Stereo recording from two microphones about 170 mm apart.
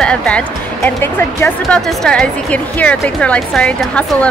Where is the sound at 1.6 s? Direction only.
5° left (ahead or behind).